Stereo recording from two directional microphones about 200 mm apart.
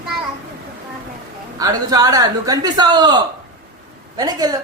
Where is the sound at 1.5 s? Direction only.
20° right (ahead or behind).